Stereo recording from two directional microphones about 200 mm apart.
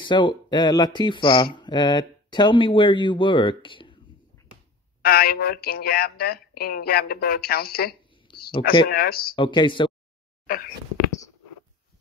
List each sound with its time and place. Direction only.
0.0 s speech: 25° left (ahead or behind)
5.0 s speech: 50° left (ahead or behind)
8.3 s a sound: 25° left (ahead or behind)
8.8 s speech: 50° left (ahead or behind)
9.3 s speech: 25° left (ahead or behind)
10.4 s speech: 45° left (ahead or behind)